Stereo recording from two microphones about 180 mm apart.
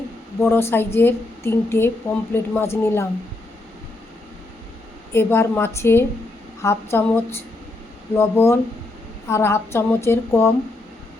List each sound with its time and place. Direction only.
0.3 s a woman's voice: 15° left (ahead or behind)
5.1 s a woman's voice: 15° left (ahead or behind)